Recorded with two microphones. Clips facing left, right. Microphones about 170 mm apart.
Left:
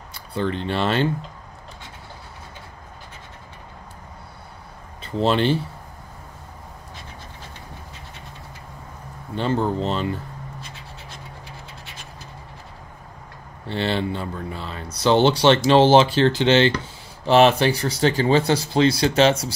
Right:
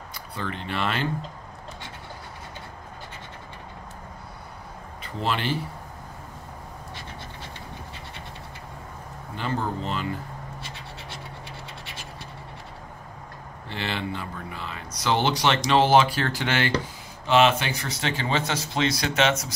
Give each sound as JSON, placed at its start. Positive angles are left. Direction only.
{"t": 0.1, "sound": "speech", "side_deg": 30}
{"t": 5.0, "sound": "speech", "side_deg": 30}
{"t": 9.3, "sound": "speech", "side_deg": 30}
{"t": 13.7, "sound": "speech", "side_deg": 30}
{"t": 17.3, "sound": "speech", "side_deg": 35}